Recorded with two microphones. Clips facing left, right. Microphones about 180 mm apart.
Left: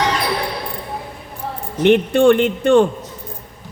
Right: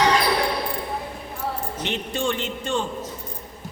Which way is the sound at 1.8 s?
60° left (ahead or behind).